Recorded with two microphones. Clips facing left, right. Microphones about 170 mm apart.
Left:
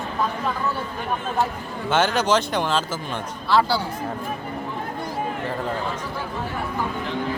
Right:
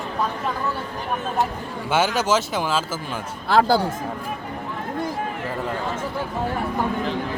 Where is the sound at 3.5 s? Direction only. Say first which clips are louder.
Right 3 dB; 50° right (ahead or behind).